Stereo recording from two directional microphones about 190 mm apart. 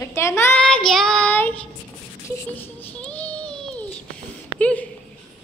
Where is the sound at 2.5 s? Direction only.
10° left (ahead or behind).